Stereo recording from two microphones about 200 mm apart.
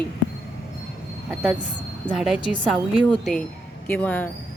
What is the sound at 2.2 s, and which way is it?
A woman's voice, 5° right (ahead or behind).